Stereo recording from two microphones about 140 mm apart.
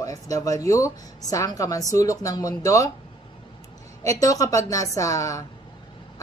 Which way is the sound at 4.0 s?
25° left (ahead or behind).